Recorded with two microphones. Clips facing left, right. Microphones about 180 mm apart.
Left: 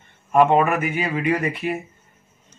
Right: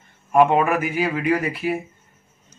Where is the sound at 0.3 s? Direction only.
5° right (ahead or behind).